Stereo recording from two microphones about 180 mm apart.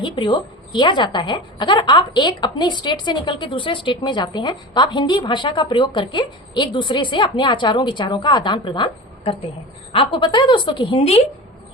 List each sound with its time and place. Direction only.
0.0 s a woman's voice: 30° left (ahead or behind)